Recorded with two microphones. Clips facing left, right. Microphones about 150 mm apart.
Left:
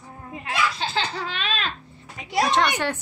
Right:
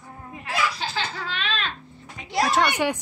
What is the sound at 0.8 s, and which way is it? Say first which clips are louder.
Speech: left 3 dB; 25° left (ahead or behind).